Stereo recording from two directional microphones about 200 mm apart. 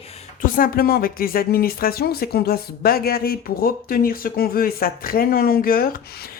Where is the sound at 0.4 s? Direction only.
45° left (ahead or behind).